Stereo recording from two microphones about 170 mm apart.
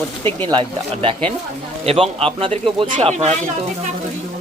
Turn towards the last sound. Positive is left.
turn(degrees=-40)  # may be behind; listen again after turning